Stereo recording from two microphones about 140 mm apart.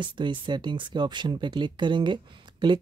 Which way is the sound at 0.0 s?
35° right (ahead or behind).